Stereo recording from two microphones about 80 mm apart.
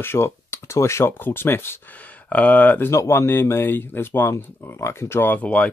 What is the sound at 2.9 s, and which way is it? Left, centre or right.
Speech, left.